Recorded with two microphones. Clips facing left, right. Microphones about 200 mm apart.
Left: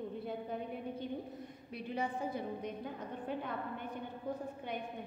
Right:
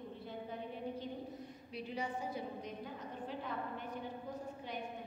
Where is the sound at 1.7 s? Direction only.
55° left (ahead or behind).